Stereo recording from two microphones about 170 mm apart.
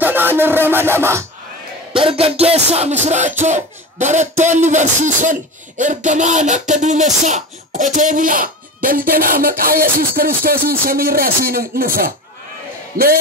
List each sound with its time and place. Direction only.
0.0 s music: 10° right (ahead or behind)
2.0 s music: 30° right (ahead or behind)
3.4 s speech: 45° right (ahead or behind)